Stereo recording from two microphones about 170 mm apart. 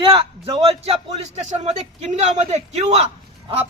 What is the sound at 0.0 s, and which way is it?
A man's voice, 30° right (ahead or behind).